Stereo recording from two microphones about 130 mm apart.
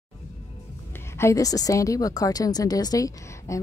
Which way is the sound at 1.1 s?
25° left (ahead or behind).